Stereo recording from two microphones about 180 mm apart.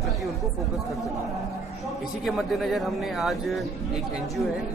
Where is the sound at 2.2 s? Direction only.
Centre (ahead or behind).